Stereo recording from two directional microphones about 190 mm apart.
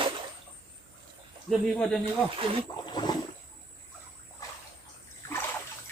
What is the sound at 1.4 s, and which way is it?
Speech, 5° left (ahead or behind).